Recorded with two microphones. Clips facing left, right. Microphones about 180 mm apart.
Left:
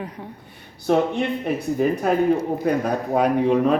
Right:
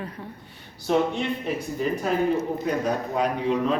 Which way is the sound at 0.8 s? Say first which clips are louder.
Left 3 dB; 55° left (ahead or behind).